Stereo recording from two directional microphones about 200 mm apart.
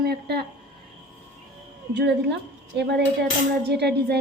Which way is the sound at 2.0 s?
60° right (ahead or behind).